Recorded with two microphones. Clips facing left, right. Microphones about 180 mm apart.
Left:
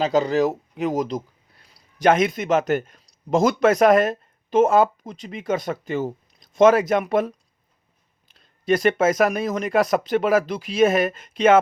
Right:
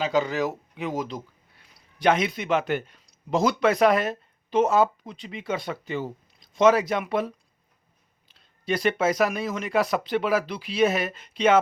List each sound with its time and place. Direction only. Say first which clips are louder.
0.0 s speech: left 5 dB; 35° left (ahead or behind)